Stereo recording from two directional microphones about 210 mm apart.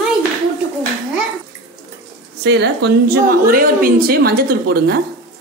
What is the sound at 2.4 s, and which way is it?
A woman's voice, 55° right (ahead or behind).